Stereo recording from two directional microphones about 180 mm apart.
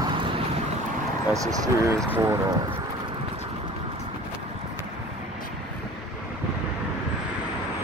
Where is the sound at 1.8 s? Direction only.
15° right (ahead or behind).